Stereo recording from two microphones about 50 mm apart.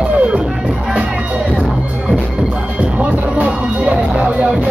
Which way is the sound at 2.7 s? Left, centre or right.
Right.